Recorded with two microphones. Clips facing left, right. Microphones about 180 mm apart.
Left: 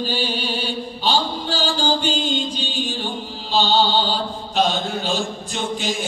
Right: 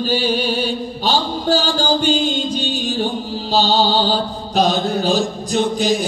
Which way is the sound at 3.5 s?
40° right (ahead or behind).